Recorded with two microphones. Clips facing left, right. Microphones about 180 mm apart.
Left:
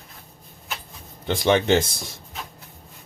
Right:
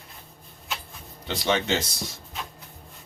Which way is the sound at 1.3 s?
55° left (ahead or behind).